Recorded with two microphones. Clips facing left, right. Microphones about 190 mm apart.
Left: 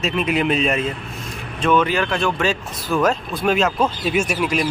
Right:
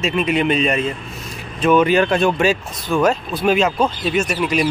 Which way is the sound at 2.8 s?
Centre (ahead or behind).